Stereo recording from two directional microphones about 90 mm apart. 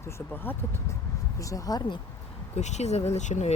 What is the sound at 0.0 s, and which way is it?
Speech, 30° left (ahead or behind).